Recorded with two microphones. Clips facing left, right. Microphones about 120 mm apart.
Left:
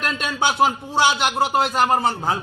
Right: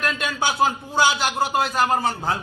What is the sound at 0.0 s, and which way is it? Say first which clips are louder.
A man's voice: left 1 dB; 25° left (ahead or behind).